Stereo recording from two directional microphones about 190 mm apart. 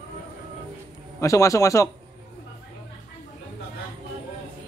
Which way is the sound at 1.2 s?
15° left (ahead or behind).